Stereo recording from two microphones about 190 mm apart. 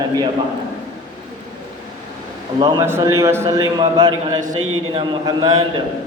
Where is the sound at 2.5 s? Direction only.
20° right (ahead or behind).